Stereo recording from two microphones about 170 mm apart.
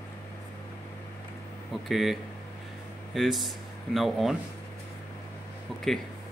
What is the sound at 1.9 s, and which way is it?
Speech, centre (ahead or behind).